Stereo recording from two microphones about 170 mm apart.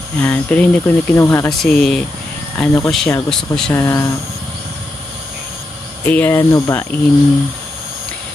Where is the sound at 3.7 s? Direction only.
15° left (ahead or behind).